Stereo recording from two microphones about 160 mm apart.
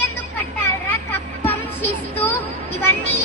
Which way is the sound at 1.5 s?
10° left (ahead or behind).